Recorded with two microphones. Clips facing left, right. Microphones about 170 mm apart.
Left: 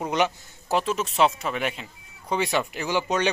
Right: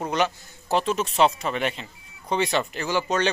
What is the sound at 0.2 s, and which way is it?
Speech, 20° left (ahead or behind).